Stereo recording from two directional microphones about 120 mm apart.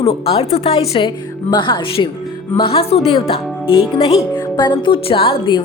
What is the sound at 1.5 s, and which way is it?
A woman's voice, 45° left (ahead or behind).